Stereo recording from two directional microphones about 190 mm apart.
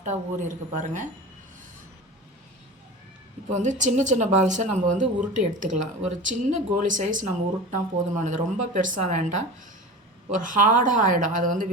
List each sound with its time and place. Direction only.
0.0 s speech: 40° right (ahead or behind)
3.5 s speech: 40° right (ahead or behind)